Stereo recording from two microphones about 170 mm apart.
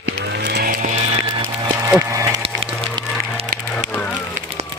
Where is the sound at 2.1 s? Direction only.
20° right (ahead or behind).